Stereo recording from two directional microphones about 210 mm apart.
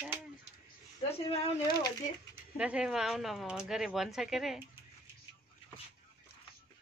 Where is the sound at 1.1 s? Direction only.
30° left (ahead or behind).